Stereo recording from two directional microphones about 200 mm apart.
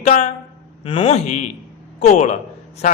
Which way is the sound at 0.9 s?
25° left (ahead or behind).